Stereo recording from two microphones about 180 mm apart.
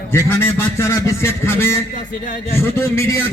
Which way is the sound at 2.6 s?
15° left (ahead or behind).